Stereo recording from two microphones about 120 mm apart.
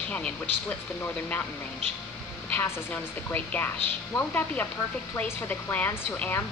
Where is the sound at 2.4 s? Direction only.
15° left (ahead or behind).